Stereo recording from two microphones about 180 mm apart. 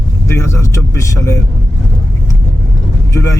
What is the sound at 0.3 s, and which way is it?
Speech, 15° left (ahead or behind).